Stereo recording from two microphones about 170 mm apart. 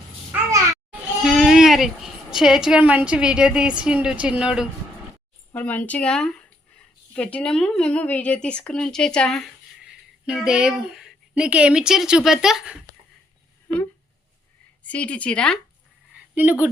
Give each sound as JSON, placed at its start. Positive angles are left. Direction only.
{"t": 0.3, "sound": "babbling", "side_deg": -20}
{"t": 1.2, "sound": "a woman's voice", "side_deg": 0}
{"t": 5.5, "sound": "speech", "side_deg": 10}
{"t": 14.8, "sound": "speech", "side_deg": 5}
{"t": 16.3, "sound": "speech", "side_deg": -10}